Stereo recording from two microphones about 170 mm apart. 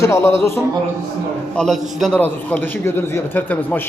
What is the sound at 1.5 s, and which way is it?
A man's voice, centre (ahead or behind).